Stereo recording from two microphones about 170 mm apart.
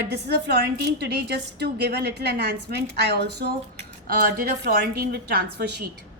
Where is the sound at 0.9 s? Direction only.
85° right.